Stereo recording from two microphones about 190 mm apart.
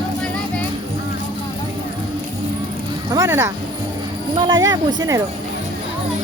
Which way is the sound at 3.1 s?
15° right (ahead or behind).